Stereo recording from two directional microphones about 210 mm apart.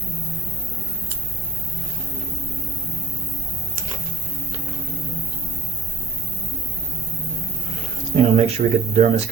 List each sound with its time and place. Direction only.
8.1 s speech: 30° right (ahead or behind)